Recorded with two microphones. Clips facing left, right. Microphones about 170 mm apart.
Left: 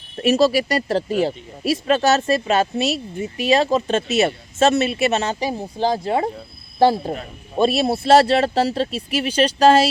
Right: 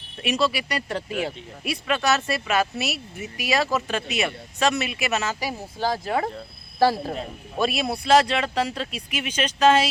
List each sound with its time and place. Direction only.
0.2 s speech: 40° left (ahead or behind)